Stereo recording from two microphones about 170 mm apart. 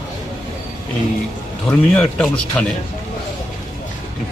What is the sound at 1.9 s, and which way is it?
Speech, 5° left (ahead or behind).